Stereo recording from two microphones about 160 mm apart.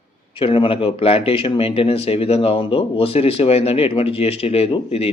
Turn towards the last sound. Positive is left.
turn(degrees=40)  # may be behind; listen again after turning